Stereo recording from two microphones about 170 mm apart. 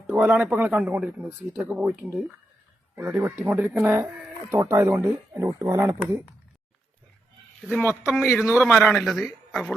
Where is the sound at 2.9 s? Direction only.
10° right (ahead or behind).